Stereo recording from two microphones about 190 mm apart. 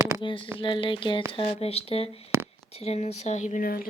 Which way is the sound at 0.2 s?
25° left (ahead or behind).